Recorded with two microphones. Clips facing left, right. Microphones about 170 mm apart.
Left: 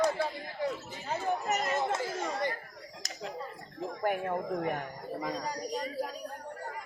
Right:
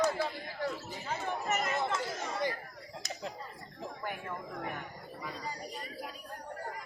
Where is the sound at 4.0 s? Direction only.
50° left (ahead or behind).